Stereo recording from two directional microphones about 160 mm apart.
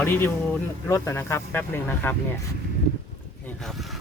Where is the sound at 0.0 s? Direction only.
15° left (ahead or behind).